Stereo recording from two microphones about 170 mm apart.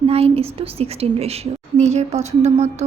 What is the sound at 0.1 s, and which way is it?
A woman's voice, 35° right (ahead or behind).